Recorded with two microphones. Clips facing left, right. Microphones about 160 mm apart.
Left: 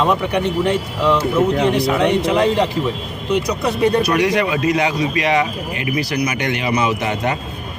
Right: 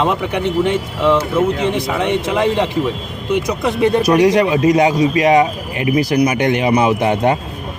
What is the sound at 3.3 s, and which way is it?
Speech, 20° right (ahead or behind).